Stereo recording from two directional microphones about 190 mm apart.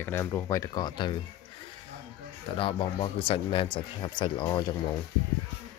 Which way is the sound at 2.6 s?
25° left (ahead or behind).